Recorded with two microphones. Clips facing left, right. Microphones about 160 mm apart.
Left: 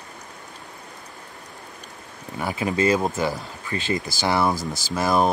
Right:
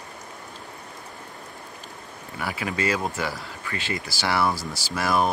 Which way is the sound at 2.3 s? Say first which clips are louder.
Left 5 dB; 25° left (ahead or behind).